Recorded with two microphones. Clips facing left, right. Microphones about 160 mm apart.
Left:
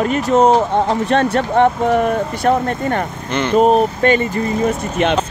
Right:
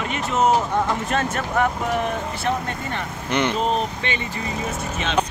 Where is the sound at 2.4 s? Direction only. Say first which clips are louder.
Left 10 dB; 50° left (ahead or behind).